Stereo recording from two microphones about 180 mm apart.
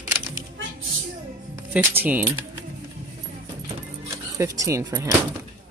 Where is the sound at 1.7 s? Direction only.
10° right (ahead or behind).